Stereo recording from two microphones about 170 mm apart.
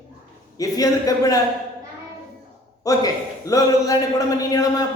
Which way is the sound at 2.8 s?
20° left (ahead or behind).